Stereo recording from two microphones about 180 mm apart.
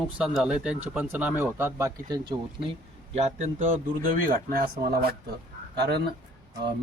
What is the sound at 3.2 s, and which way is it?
Speech, 40° right (ahead or behind).